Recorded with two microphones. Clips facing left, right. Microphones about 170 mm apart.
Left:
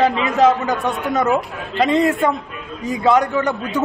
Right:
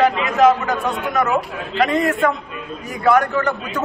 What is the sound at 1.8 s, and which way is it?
A man's voice, 20° left (ahead or behind).